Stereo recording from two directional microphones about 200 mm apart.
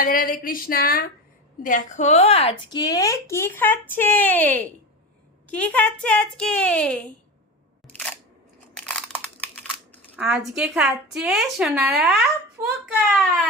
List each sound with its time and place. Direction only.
0.0 s a woman's voice: 45° left (ahead or behind); by 7.1 s 5° left (ahead or behind)
7.9 s single-lens reflex camera: 5° left (ahead or behind)
8.7 s crunch: 5° left (ahead or behind)
10.2 s a woman's voice: centre (ahead or behind)